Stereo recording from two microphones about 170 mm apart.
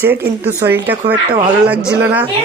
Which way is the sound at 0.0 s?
10° right (ahead or behind).